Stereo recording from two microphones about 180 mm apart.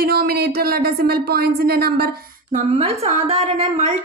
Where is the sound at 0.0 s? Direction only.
60° right (ahead or behind).